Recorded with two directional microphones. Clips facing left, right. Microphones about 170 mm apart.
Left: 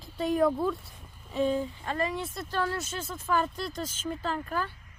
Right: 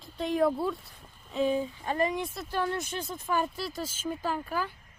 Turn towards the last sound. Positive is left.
turn(degrees=-10)  # may be behind; listen again after turning